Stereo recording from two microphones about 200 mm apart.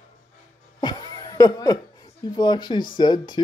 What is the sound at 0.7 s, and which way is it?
Cough, 20° left (ahead or behind).